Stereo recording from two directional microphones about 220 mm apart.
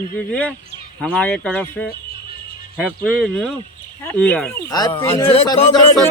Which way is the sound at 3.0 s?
5° left (ahead or behind).